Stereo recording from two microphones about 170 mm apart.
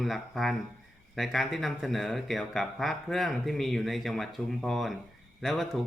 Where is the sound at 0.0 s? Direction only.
Centre (ahead or behind).